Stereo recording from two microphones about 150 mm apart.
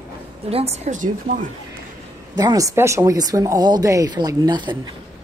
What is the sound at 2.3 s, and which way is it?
Speech, 25° right (ahead or behind).